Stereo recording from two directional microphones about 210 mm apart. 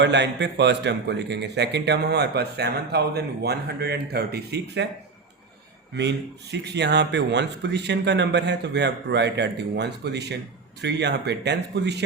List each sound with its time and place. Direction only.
0.0 s a man's voice: 55° right (ahead or behind)
6.0 s a man's voice: 55° right (ahead or behind)